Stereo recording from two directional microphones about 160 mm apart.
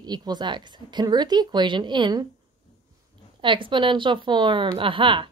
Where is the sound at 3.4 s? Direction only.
30° right (ahead or behind).